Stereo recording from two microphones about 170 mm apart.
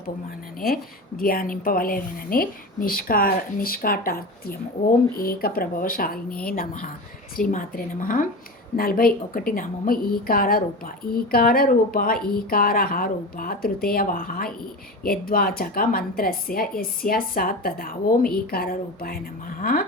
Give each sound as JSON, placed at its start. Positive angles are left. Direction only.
{"t": 0.6, "sound": "a woman's voice", "side_deg": 60}